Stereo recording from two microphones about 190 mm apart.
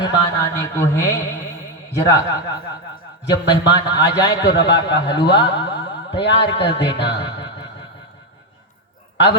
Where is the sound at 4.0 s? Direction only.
20° left (ahead or behind).